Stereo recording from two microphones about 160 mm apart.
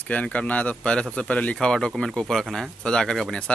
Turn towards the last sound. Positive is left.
turn(degrees=5)  # may be behind; listen again after turning